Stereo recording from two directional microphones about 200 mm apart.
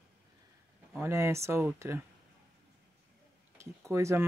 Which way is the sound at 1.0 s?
15° right (ahead or behind).